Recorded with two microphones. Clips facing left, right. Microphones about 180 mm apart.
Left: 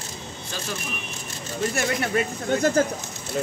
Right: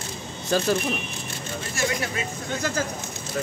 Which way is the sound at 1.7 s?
55° left (ahead or behind).